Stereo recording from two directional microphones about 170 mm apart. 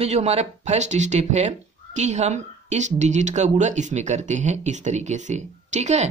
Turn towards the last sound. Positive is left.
turn(degrees=-40)  # may be behind; listen again after turning